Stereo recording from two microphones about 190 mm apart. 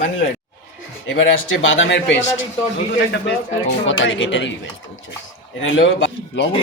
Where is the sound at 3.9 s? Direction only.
80° left.